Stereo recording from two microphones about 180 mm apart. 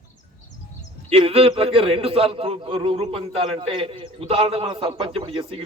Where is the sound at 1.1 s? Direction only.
30° right (ahead or behind).